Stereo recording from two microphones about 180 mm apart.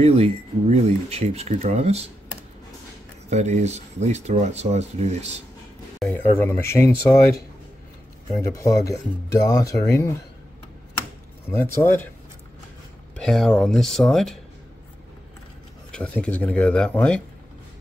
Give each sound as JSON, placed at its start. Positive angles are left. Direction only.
{"t": 0.0, "sound": "speech", "side_deg": -35}
{"t": 3.3, "sound": "speech", "side_deg": -40}
{"t": 6.0, "sound": "speech", "side_deg": 15}
{"t": 8.4, "sound": "speech", "side_deg": 15}
{"t": 11.5, "sound": "speech", "side_deg": 15}
{"t": 13.1, "sound": "speech", "side_deg": 0}
{"t": 15.9, "sound": "speech", "side_deg": 5}